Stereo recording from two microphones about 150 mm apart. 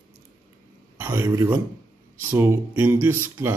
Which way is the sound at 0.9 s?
15° right (ahead or behind).